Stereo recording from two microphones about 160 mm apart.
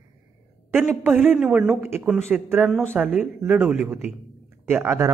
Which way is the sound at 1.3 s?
5° right (ahead or behind).